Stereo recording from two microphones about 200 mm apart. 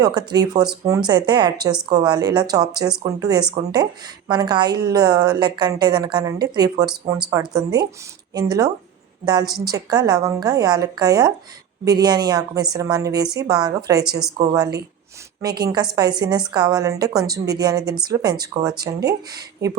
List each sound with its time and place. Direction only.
0.0 s a woman's voice: 20° right (ahead or behind)
19.6 s a woman's voice: 20° right (ahead or behind)